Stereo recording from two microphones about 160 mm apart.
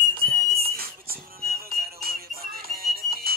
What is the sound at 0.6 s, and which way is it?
Music, 70° right (ahead or behind).